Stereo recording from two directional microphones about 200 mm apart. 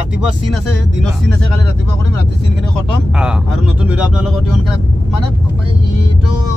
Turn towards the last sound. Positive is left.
turn(degrees=-5)  # may be behind; listen again after turning